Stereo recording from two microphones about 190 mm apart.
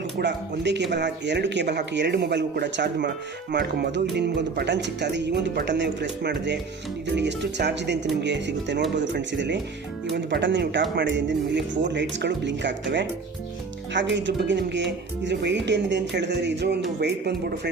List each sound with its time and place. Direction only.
0.2 s speech: 65° right (ahead or behind)
13.9 s speech: 70° right (ahead or behind)